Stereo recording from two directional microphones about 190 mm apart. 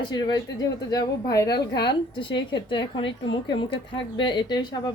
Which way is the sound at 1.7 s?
60° left (ahead or behind).